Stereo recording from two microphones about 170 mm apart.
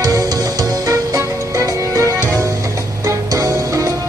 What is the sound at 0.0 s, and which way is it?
Music, 20° right (ahead or behind).